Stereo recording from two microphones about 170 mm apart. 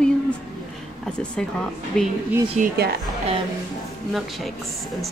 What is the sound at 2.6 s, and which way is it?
Speech, 45° right (ahead or behind).